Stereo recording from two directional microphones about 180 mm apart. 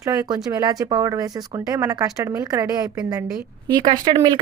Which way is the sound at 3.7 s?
25° right (ahead or behind).